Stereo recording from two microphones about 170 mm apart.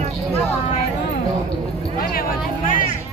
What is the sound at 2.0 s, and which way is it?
Speech, 60° left (ahead or behind).